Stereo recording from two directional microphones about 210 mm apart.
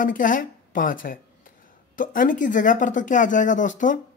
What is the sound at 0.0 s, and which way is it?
A woman's voice, 40° left (ahead or behind).